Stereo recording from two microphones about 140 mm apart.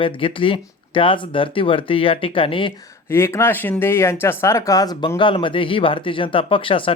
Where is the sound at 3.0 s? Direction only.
20° left (ahead or behind).